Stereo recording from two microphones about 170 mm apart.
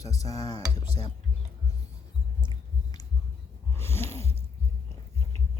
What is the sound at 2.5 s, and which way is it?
Heart sounds, 25° left (ahead or behind).